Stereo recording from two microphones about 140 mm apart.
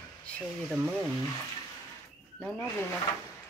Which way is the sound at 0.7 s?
5° right (ahead or behind).